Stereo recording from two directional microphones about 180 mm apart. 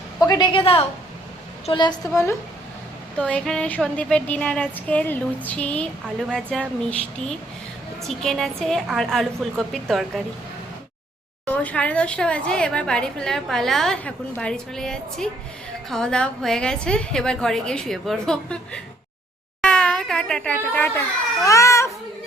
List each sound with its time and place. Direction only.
0.2 s a woman's voice: 20° left (ahead or behind)
3.2 s a woman's voice: 5° left (ahead or behind)
11.4 s a woman's voice: 10° left (ahead or behind)